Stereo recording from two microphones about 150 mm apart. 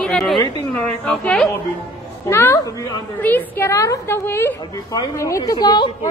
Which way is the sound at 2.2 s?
15° left (ahead or behind).